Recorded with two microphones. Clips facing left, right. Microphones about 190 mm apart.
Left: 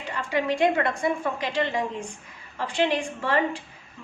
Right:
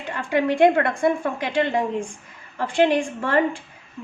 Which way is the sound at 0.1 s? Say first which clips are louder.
Right 4 dB; 55° right (ahead or behind).